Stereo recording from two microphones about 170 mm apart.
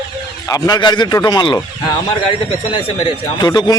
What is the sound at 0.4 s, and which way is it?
Speech, 20° left (ahead or behind).